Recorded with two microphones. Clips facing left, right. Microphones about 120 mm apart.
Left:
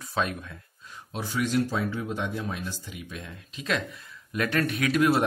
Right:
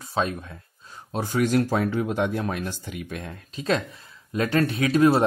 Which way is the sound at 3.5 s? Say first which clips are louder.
Right 5 dB; 35° right (ahead or behind).